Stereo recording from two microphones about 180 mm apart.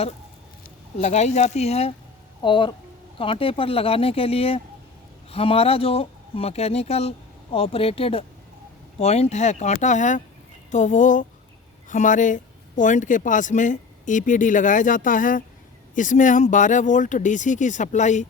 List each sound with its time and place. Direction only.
1.0 s speech: 40° left (ahead or behind)